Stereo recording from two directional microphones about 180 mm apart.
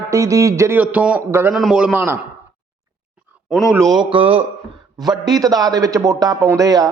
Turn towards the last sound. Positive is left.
turn(degrees=-20)  # may be behind; listen again after turning